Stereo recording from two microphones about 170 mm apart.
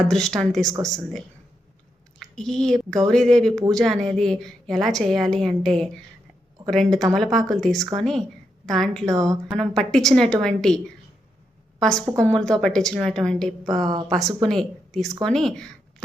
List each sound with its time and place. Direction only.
0.0 s a woman's voice: centre (ahead or behind)
0.7 s speech: 20° right (ahead or behind)
2.3 s a woman's voice: 5° left (ahead or behind)
7.8 s speech: 25° right (ahead or behind)
8.6 s a woman's voice: 5° left (ahead or behind)
9.0 s speech: 20° right (ahead or behind)
9.6 s a woman's voice: 5° left (ahead or behind)
11.8 s a woman's voice: 5° left (ahead or behind)
13.7 s speech: 25° right (ahead or behind)
14.1 s a woman's voice: centre (ahead or behind)